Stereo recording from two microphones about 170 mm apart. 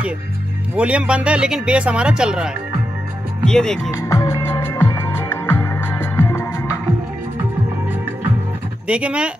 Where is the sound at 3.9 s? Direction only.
20° left (ahead or behind).